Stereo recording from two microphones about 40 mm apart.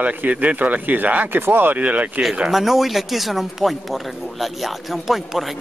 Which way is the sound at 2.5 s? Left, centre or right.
Centre.